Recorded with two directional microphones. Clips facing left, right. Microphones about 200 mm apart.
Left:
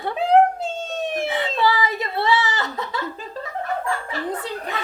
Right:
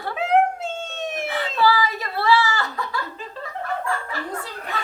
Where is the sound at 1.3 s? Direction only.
20° left (ahead or behind).